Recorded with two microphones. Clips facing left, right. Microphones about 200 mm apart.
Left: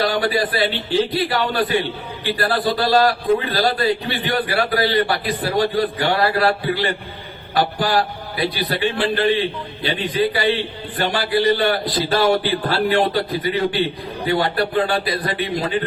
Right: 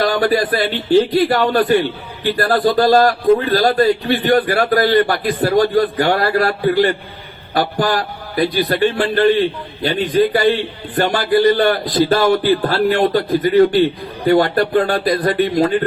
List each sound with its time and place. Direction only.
0.0 s a man's voice: 45° right (ahead or behind)